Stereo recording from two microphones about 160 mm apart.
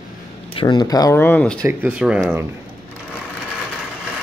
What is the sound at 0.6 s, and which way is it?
Speech, 25° left (ahead or behind).